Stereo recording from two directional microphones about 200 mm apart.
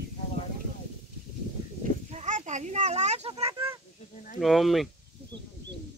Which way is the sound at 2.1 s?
35° right (ahead or behind).